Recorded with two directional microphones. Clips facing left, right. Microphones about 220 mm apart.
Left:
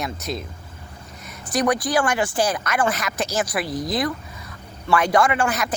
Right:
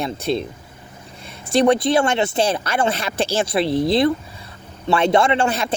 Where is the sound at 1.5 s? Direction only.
25° right (ahead or behind).